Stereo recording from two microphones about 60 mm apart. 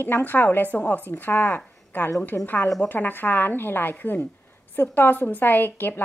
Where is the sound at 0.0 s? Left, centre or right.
Left.